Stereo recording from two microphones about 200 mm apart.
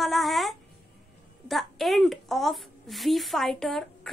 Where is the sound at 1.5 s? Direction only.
Centre (ahead or behind).